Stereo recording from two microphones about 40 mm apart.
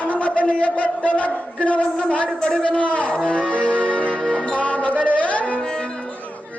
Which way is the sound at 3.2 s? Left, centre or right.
Left.